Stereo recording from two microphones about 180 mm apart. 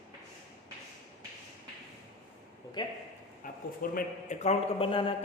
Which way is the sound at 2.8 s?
25° left (ahead or behind).